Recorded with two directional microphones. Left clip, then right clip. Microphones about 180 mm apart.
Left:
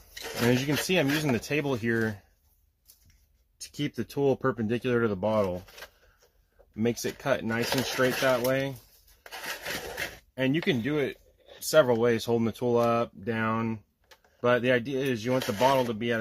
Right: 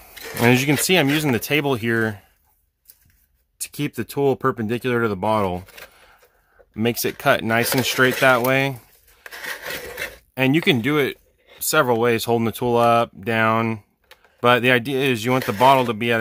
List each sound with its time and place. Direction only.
0.5 s speech: 50° right (ahead or behind)
3.7 s speech: 35° right (ahead or behind)
6.7 s speech: 40° right (ahead or behind); by 8.7 s 55° right (ahead or behind)
10.3 s speech: 55° right (ahead or behind)
11.7 s speech: 35° right (ahead or behind); by 15.3 s 50° right (ahead or behind)
15.3 s speech: 40° right (ahead or behind)
15.7 s speech: 55° right (ahead or behind)